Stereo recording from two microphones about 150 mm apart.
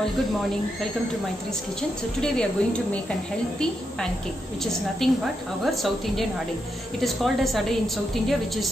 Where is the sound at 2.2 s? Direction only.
5° left (ahead or behind).